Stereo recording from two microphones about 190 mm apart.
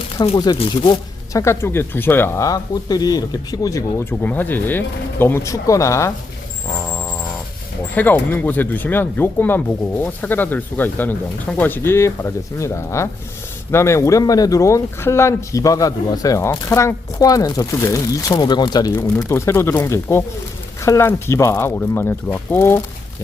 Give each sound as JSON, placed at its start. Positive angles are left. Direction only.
{"t": 0.3, "sound": "speech", "side_deg": 20}
{"t": 7.9, "sound": "speech", "side_deg": 10}